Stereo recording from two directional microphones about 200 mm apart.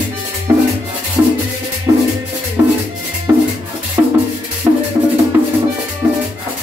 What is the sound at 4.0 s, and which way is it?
Music, 15° right (ahead or behind).